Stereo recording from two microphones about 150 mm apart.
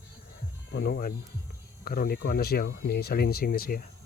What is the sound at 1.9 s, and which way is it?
Speech, 80° left.